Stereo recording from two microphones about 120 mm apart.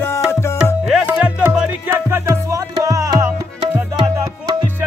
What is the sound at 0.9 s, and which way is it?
Music, 10° right (ahead or behind).